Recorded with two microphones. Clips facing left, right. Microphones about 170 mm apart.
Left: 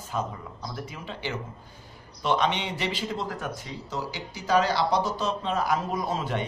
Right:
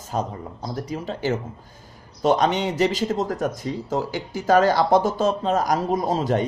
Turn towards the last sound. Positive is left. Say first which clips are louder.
# right 7 dB
turn(degrees=-40)  # may be behind; listen again after turning